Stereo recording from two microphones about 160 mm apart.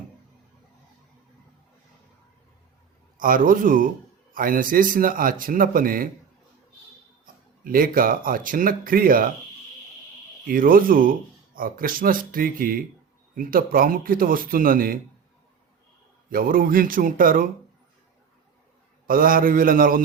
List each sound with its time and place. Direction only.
3.2 s a man's voice: 60° right (ahead or behind)
7.6 s a man's voice: 65° right (ahead or behind)
10.4 s a man's voice: 60° right (ahead or behind)
16.3 s a man's voice: 60° right (ahead or behind)
19.0 s a man's voice: 60° right (ahead or behind)